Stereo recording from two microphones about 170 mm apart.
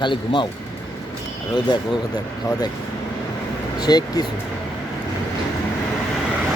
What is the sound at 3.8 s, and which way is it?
Speech, 25° left (ahead or behind).